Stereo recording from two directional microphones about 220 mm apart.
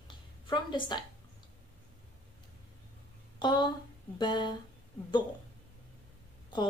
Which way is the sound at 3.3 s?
20° left (ahead or behind).